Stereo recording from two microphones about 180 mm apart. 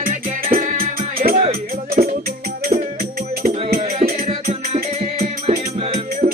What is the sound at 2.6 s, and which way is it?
Music, 50° right (ahead or behind).